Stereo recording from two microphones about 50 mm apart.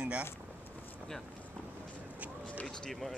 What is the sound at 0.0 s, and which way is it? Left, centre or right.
Vehicle, right.